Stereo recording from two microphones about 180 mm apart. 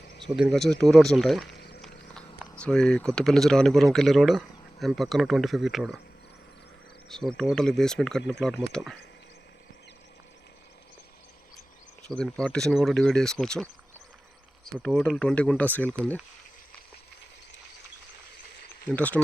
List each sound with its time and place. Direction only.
0.5 s speech: centre (ahead or behind)
1.5 s a sound: 65° left (ahead or behind)
2.6 s speech: 5° left (ahead or behind)
7.1 s speech: 5° left (ahead or behind)
12.0 s speech: 5° left (ahead or behind)
14.8 s speech: 5° left (ahead or behind)
18.9 s speech: 10° left (ahead or behind)